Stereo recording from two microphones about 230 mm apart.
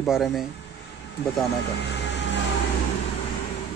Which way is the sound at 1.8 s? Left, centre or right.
Left.